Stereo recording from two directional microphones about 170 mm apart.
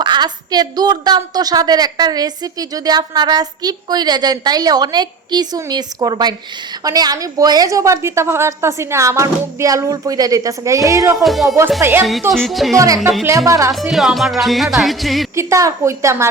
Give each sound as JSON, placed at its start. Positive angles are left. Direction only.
{"t": 0.0, "sound": "a woman's voice", "side_deg": -25}
{"t": 11.2, "sound": "speech", "side_deg": 0}
{"t": 11.8, "sound": "a woman's voice", "side_deg": -15}
{"t": 12.3, "sound": "speech", "side_deg": 0}
{"t": 12.7, "sound": "a woman's voice", "side_deg": -20}
{"t": 13.0, "sound": "speech", "side_deg": 0}
{"t": 13.2, "sound": "a woman's voice", "side_deg": -20}
{"t": 13.7, "sound": "speech", "side_deg": 0}
{"t": 15.4, "sound": "a woman's voice", "side_deg": -15}